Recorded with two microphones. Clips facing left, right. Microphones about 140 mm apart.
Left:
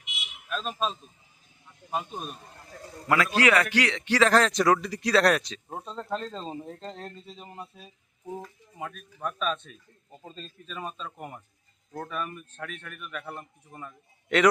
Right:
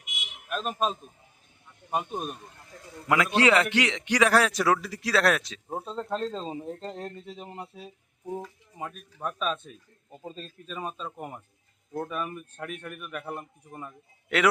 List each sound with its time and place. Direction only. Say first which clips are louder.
0.0 s a sound: even; 45° right (ahead or behind)
0.6 s a man's voice: right 3 dB; 50° right (ahead or behind)
2.6 s a man's voice: left 3 dB; 40° left (ahead or behind)
3.1 s a man's voice: right 1 dB; 20° right (ahead or behind); by 7.1 s 5° right (ahead or behind)
7.2 s speech: right 4 dB; 60° right (ahead or behind)
8.2 s a man's voice: right 3 dB; 10° right (ahead or behind)